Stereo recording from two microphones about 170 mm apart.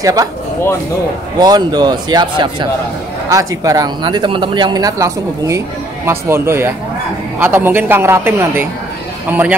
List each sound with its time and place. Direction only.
0.0 s speech: 20° right (ahead or behind)
1.4 s a man's voice: 25° right (ahead or behind)